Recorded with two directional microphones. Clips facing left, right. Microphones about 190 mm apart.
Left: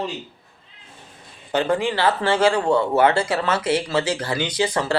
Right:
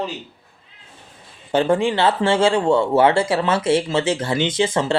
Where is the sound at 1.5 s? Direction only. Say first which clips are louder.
Right 3 dB; 25° right (ahead or behind).